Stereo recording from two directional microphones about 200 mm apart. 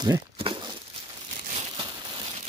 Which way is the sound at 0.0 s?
25° right (ahead or behind).